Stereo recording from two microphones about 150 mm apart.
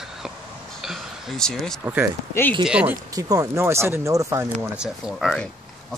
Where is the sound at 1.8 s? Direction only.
15° right (ahead or behind).